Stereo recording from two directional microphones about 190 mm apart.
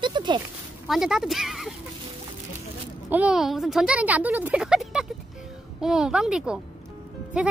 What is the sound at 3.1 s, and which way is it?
Speech, 5° right (ahead or behind).